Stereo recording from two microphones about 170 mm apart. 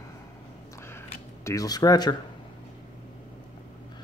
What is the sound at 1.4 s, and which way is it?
Speech, 20° left (ahead or behind).